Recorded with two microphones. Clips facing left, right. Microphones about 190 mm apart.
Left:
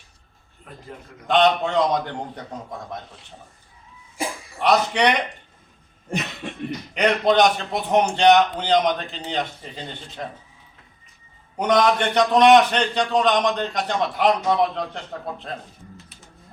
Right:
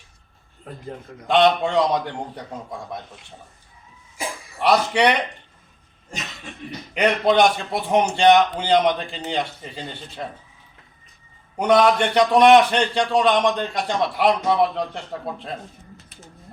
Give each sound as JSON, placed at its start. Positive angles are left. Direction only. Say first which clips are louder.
{"t": 1.3, "sound": "a man's voice", "louder": "right 1 dB", "side_deg": -10}
{"t": 4.6, "sound": "a man's voice", "louder": "right 1 dB", "side_deg": -10}
{"t": 6.1, "sound": "cough", "louder": "left 8 dB", "side_deg": 60}
{"t": 6.9, "sound": "a man's voice", "louder": "right 1 dB", "side_deg": -5}
{"t": 11.5, "sound": "a man's voice", "louder": "right 2 dB", "side_deg": -5}